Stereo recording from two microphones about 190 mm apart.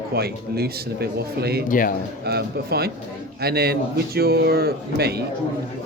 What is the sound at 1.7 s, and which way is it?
Speech, 45° left (ahead or behind).